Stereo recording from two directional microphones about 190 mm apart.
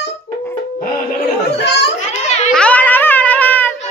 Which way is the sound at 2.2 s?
35° left (ahead or behind).